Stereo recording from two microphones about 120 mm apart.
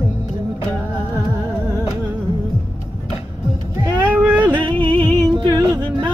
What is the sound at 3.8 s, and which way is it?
Music, 20° right (ahead or behind).